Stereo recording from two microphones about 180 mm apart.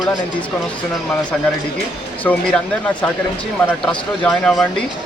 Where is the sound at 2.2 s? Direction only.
5° left (ahead or behind).